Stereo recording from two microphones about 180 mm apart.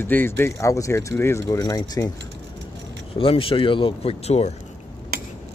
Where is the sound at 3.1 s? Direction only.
30° left (ahead or behind).